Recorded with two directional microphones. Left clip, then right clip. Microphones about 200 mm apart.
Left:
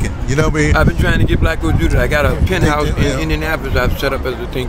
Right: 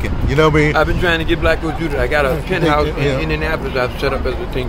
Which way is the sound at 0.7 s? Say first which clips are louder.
Right 1 dB; 50° left (ahead or behind).